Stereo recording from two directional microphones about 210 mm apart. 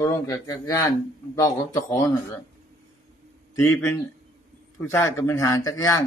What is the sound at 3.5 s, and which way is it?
Speech, 15° left (ahead or behind).